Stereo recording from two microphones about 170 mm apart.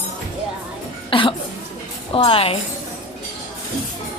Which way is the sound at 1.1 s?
30° left (ahead or behind).